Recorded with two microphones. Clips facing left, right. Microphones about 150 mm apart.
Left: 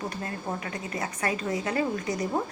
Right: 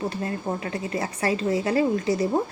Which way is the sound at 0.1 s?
30° right (ahead or behind).